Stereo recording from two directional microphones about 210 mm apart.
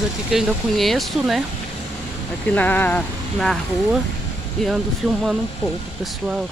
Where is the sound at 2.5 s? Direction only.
10° left (ahead or behind).